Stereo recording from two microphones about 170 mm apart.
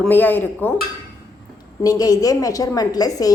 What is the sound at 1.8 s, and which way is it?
A woman's voice, 20° left (ahead or behind).